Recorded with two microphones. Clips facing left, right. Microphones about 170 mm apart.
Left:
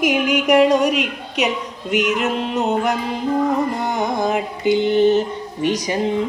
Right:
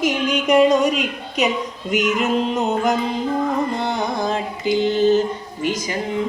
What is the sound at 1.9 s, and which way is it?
Music, 5° left (ahead or behind).